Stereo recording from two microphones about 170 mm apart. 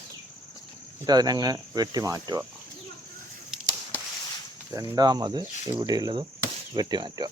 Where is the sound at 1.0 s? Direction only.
25° right (ahead or behind).